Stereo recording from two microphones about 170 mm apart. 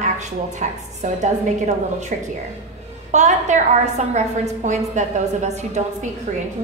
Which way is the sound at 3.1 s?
45° right (ahead or behind).